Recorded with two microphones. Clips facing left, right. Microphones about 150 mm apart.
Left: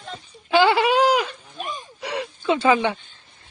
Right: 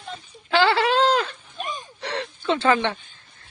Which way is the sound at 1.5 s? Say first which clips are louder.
Right 1 dB; centre (ahead or behind).